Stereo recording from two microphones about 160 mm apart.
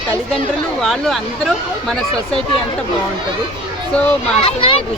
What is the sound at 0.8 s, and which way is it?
Speech, centre (ahead or behind).